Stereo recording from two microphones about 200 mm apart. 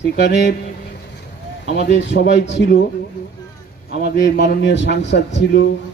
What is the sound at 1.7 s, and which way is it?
A man's voice, 60° left (ahead or behind).